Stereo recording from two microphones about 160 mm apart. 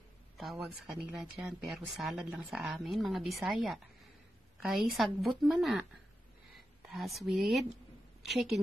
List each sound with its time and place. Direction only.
0.8 s a woman's voice: centre (ahead or behind)